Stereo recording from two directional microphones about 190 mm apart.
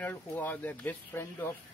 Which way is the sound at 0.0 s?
10° left (ahead or behind).